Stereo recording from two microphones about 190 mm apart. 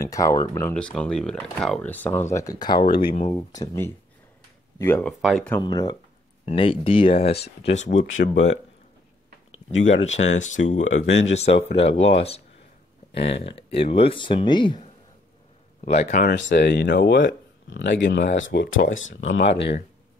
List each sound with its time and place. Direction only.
0.0 s speech: 15° left (ahead or behind)
2.9 s speech: 50° left (ahead or behind)
3.3 s speech: 20° left (ahead or behind)
5.2 s speech: centre (ahead or behind)
5.6 s speech: 20° left (ahead or behind); by 8.5 s 40° left (ahead or behind)
10.0 s speech: 35° left (ahead or behind)
15.8 s speech: 35° left (ahead or behind)
16.3 s speech: 65° left (ahead or behind); by 19.5 s 85° left